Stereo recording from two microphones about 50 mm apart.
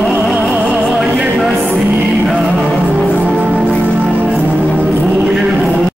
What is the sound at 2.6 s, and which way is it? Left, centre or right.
Music, centre.